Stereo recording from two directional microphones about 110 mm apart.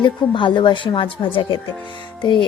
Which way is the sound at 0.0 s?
45° left (ahead or behind).